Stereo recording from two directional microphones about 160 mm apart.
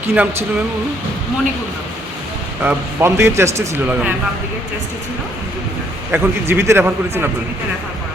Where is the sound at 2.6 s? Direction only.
15° right (ahead or behind).